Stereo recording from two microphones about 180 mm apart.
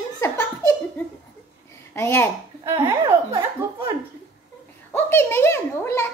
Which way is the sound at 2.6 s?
20° right (ahead or behind).